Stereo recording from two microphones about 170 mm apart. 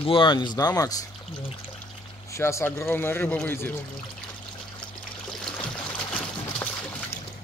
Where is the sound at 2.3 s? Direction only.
15° left (ahead or behind).